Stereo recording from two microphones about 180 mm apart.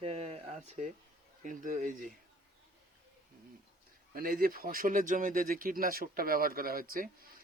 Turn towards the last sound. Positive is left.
turn(degrees=-50)  # may be behind; listen again after turning